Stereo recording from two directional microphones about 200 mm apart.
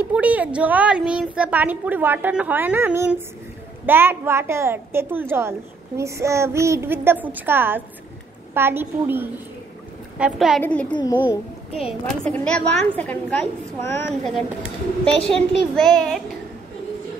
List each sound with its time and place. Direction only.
0.0 s a woman's voice: 5° right (ahead or behind)
10.6 s a child's voice: 5° left (ahead or behind)
10.9 s speech: 20° left (ahead or behind)
11.1 s a child's voice: 5° right (ahead or behind)
12.3 s a woman's voice: 5° left (ahead or behind)